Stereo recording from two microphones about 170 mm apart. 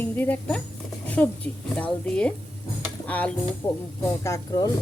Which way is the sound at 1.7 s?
5° left (ahead or behind).